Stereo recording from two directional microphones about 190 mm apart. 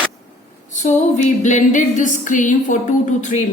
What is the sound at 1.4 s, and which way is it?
A woman's voice, 40° left (ahead or behind).